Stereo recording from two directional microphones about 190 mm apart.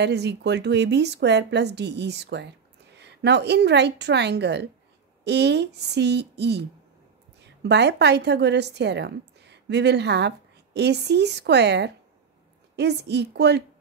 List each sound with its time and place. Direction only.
0.0 s a woman's voice: 60° right (ahead or behind)
7.6 s a woman's voice: 65° right (ahead or behind)